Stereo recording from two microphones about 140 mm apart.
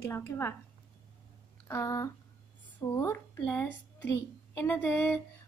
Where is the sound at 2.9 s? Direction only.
20° left (ahead or behind).